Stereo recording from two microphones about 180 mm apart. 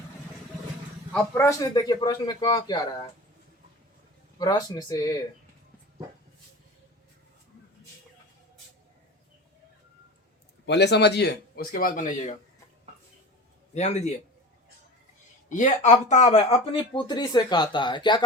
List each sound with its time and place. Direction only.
1.1 s speech: 10° left (ahead or behind)
4.4 s speech: 20° left (ahead or behind)
10.7 s speech: 70° left (ahead or behind); by 12.4 s 45° left (ahead or behind)
13.7 s a man's voice: 40° left (ahead or behind)
15.4 s speech: 40° left (ahead or behind); by 18.2 s 25° left (ahead or behind)